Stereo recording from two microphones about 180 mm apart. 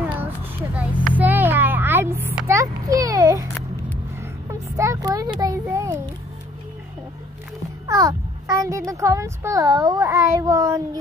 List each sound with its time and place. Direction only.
0.2 s a sound: 10° right (ahead or behind)
1.1 s a child's voice: 10° right (ahead or behind)
7.8 s a child's voice: 20° right (ahead or behind)